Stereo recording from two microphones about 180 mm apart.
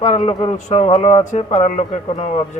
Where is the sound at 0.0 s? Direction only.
40° left (ahead or behind).